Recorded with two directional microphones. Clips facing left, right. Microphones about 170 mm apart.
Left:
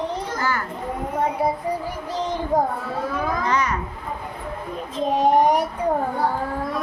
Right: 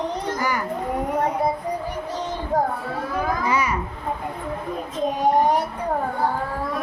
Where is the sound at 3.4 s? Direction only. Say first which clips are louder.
Left 1 dB; 10° right (ahead or behind).